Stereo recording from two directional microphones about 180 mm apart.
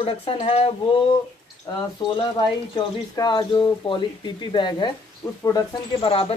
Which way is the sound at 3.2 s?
25° left (ahead or behind).